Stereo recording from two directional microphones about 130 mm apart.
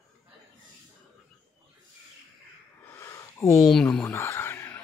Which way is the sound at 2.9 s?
25° left (ahead or behind).